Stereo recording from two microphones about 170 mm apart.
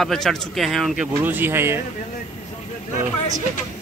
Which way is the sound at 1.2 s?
10° right (ahead or behind).